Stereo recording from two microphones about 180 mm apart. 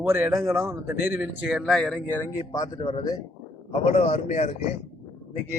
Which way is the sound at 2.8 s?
25° left (ahead or behind).